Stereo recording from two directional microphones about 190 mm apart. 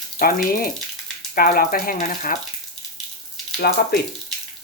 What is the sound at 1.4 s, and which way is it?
Speech, 50° left (ahead or behind).